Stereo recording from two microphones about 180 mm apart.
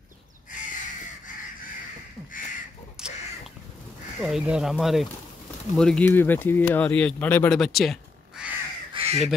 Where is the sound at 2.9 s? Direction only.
5° right (ahead or behind).